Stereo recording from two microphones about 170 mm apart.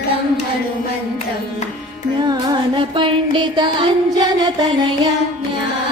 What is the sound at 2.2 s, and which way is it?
Music, 25° right (ahead or behind).